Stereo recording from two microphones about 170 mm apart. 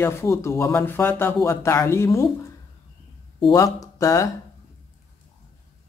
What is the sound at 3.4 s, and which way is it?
Speech, 20° left (ahead or behind).